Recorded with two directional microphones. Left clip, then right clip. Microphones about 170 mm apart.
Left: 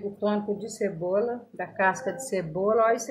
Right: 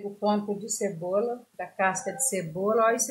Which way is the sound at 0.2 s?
Centre (ahead or behind).